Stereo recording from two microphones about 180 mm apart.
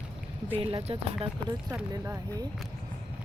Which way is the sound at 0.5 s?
30° right (ahead or behind).